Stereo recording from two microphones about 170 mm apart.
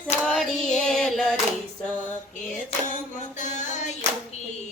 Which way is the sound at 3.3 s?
45° left (ahead or behind).